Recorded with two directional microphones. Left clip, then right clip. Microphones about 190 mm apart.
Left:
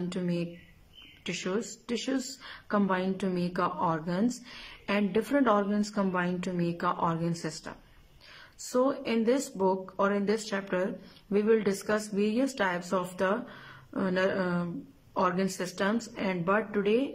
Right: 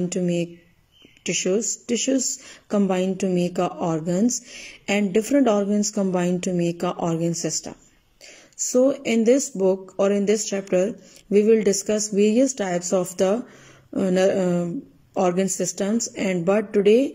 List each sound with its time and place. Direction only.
0.1 s a woman's voice: 20° right (ahead or behind)
8.7 s a woman's voice: 20° right (ahead or behind)